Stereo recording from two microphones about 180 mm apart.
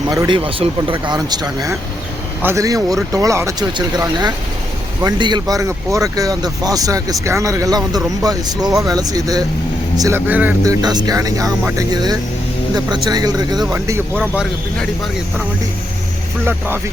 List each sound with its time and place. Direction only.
0.1 s speech: 20° right (ahead or behind)
14.2 s speech: centre (ahead or behind)
16.5 s speech: 10° right (ahead or behind)